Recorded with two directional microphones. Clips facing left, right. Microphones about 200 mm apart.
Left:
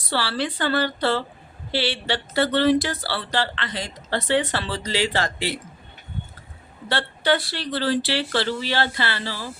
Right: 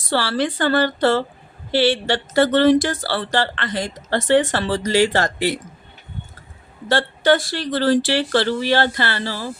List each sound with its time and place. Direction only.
0.1 s speech: 45° right (ahead or behind)
6.8 s speech: 45° right (ahead or behind)